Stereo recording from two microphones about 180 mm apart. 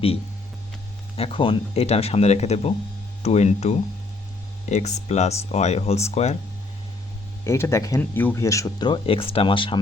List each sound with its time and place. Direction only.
1.1 s speech: 30° left (ahead or behind)
7.4 s speech: 15° left (ahead or behind)